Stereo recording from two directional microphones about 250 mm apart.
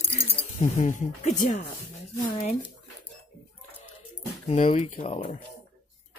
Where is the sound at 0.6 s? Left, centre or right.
Left.